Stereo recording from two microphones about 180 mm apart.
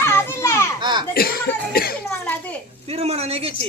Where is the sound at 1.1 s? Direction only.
55° left (ahead or behind).